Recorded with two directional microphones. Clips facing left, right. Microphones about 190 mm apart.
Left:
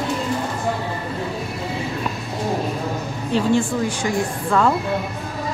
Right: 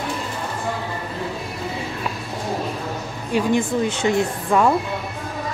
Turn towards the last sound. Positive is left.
turn(degrees=-15)  # may be behind; listen again after turning